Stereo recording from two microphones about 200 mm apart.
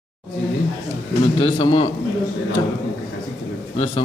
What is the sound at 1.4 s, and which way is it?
Speech, 25° left (ahead or behind).